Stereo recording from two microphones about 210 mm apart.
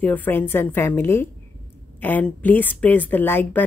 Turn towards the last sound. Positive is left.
turn(degrees=10)  # may be behind; listen again after turning